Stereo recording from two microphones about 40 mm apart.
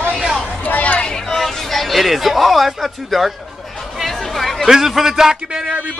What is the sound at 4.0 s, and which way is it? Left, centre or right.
Music, centre.